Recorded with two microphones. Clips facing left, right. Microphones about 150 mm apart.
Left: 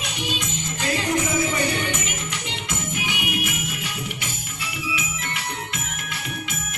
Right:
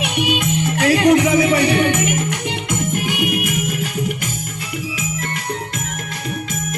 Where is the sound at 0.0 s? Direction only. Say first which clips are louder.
Right 10 dB; 60° right (ahead or behind); by 5.8 s 40° right (ahead or behind).